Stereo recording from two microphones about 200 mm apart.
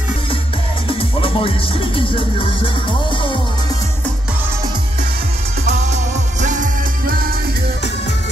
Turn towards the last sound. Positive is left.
turn(degrees=-45)  # may be behind; listen again after turning